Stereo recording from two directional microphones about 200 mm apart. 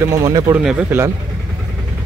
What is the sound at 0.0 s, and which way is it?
Speech, 15° right (ahead or behind).